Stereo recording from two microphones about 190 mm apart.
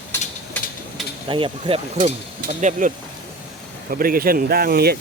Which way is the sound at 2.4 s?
40° right (ahead or behind).